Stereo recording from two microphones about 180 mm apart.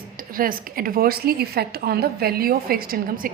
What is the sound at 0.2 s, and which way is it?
A woman's voice, 50° right (ahead or behind).